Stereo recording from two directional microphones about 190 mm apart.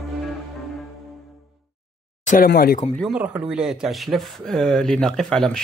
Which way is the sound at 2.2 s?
50° left (ahead or behind).